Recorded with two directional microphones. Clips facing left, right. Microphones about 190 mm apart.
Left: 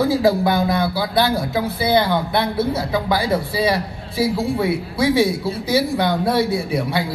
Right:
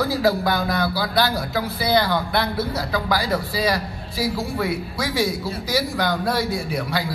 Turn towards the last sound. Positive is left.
turn(degrees=25)  # may be behind; listen again after turning